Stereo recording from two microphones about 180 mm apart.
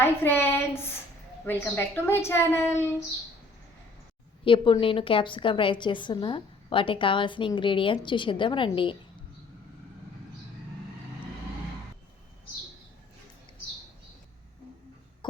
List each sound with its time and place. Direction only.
0.0 s a woman's voice: 10° left (ahead or behind)
4.4 s a woman's voice: 30° left (ahead or behind)
15.2 s a sound: 25° left (ahead or behind)